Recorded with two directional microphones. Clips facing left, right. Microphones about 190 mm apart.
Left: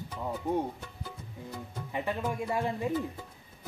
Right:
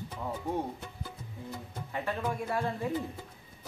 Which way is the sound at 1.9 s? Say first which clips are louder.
Left 1 dB; 15° left (ahead or behind).